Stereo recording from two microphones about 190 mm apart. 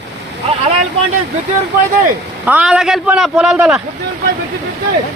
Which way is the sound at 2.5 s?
5° right (ahead or behind).